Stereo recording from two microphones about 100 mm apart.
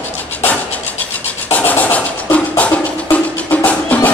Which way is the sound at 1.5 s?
15° left (ahead or behind).